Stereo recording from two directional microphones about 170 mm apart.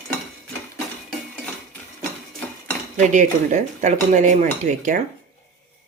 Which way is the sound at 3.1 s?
45° right (ahead or behind).